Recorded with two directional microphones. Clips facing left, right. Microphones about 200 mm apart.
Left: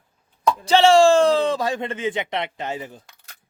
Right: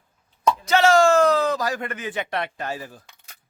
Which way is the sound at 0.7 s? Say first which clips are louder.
Left 3 dB; 30° left (ahead or behind).